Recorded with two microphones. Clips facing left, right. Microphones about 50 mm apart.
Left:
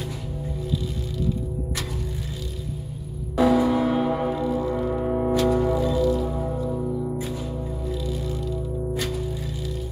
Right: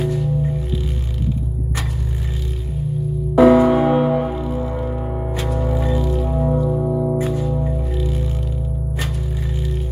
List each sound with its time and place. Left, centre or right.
0.0 s music: right
3.3 s music: right
4.0 s music: centre
4.4 s music: right
4.9 s music: centre
5.7 s music: right
6.6 s music: right